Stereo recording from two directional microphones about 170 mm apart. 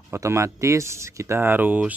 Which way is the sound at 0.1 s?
15° right (ahead or behind).